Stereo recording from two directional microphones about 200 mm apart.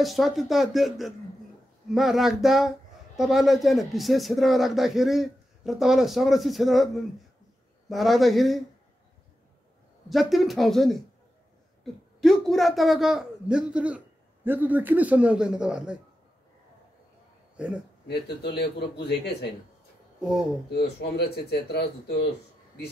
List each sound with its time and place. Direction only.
0.0 s a man's voice: centre (ahead or behind)
10.0 s a man's voice: centre (ahead or behind)
17.6 s speech: 5° right (ahead or behind)
18.0 s speech: 55° left (ahead or behind)
20.2 s speech: centre (ahead or behind)
20.7 s speech: 55° left (ahead or behind)